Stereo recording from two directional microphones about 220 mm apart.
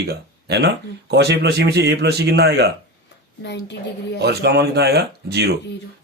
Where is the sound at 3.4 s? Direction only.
50° left (ahead or behind).